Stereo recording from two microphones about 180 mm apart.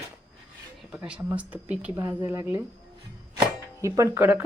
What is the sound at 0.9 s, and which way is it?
Speech, 5° right (ahead or behind).